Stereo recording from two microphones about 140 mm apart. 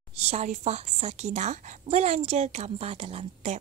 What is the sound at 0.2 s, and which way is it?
A woman's voice, 50° right (ahead or behind).